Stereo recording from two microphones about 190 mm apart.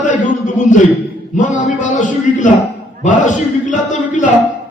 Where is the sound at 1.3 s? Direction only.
40° left (ahead or behind).